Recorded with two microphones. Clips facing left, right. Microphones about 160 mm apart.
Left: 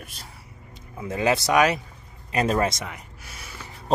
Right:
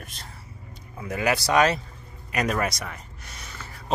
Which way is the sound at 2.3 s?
30° left (ahead or behind).